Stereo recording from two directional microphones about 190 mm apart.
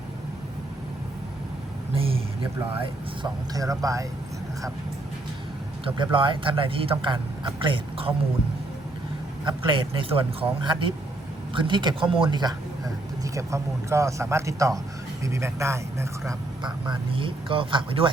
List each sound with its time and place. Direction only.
1.9 s a sound: 30° right (ahead or behind)
3.5 s speech: 20° right (ahead or behind)
5.8 s speech: 25° right (ahead or behind)
9.4 s speech: 25° right (ahead or behind)